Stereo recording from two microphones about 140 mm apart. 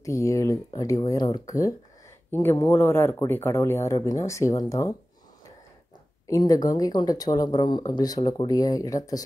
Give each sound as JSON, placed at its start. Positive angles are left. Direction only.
{"t": 0.0, "sound": "speech", "side_deg": 25}
{"t": 6.2, "sound": "speech", "side_deg": 25}